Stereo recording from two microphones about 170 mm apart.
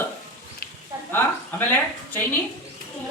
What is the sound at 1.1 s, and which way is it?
Speech, 10° left (ahead or behind).